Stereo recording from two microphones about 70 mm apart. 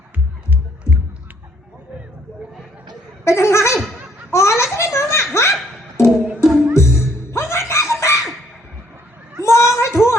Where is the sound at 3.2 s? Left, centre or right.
Left.